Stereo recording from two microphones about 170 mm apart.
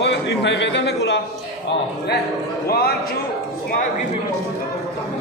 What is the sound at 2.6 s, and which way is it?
Speech, 65° left (ahead or behind).